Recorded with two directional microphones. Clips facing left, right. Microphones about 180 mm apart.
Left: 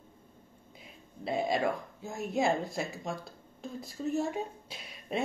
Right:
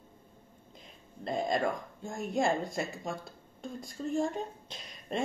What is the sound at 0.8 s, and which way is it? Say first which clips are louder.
Speech: left 1 dB; 5° left (ahead or behind).